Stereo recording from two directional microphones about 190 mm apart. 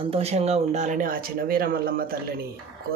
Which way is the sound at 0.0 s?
30° right (ahead or behind).